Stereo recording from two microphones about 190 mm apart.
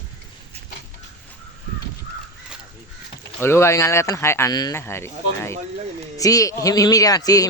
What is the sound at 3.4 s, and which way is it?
Speech, 15° left (ahead or behind).